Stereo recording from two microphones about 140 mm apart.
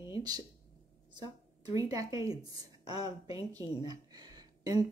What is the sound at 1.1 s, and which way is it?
A woman's voice, 25° right (ahead or behind).